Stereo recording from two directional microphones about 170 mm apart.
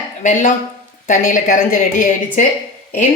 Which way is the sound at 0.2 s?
50° left (ahead or behind).